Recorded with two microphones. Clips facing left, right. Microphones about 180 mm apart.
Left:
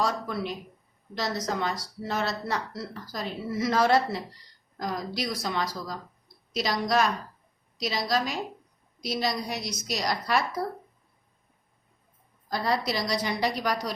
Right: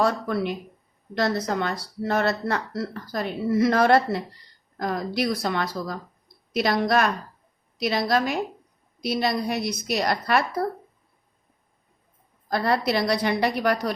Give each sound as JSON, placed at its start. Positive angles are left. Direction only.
{"t": 0.0, "sound": "speech", "side_deg": -60}
{"t": 12.5, "sound": "speech", "side_deg": -60}